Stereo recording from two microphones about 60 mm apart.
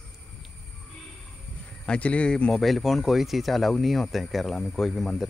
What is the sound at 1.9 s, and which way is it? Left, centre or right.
Speech, left.